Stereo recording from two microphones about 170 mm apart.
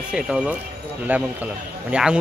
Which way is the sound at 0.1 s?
5° right (ahead or behind).